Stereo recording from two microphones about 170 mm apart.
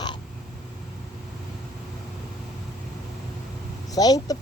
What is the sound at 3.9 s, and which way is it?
Speech, 20° left (ahead or behind).